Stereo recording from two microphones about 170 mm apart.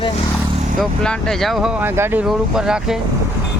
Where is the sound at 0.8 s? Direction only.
5° left (ahead or behind).